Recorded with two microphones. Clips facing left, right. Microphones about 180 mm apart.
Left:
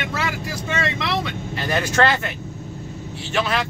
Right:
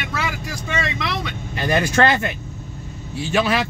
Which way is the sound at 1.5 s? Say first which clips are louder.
Right 2 dB; 15° right (ahead or behind).